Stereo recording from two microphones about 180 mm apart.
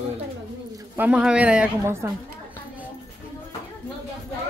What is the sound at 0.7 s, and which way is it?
Speech, 10° right (ahead or behind).